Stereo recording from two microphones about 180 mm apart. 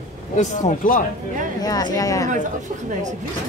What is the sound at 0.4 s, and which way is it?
Speech, 45° left (ahead or behind).